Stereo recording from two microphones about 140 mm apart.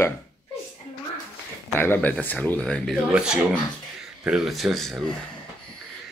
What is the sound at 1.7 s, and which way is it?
Speech, 15° left (ahead or behind).